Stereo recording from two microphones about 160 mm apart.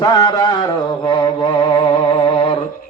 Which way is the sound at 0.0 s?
25° left (ahead or behind).